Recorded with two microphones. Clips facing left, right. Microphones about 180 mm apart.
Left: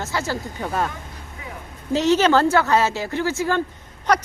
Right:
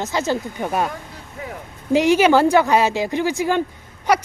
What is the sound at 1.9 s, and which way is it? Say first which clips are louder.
Speech: right 3 dB; 10° right (ahead or behind).